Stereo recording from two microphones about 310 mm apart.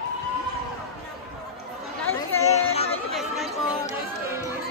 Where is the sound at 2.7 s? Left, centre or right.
Centre.